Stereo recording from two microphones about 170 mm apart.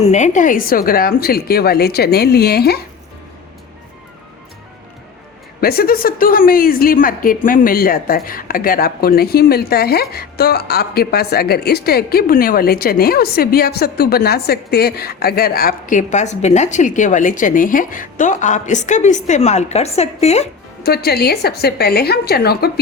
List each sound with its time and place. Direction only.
0.0 s a woman's voice: 45° left (ahead or behind); by 2.7 s 70° left (ahead or behind)
5.5 s a woman's voice: 65° left (ahead or behind); by 20.5 s 40° left (ahead or behind)
20.8 s a woman's voice: 70° left (ahead or behind)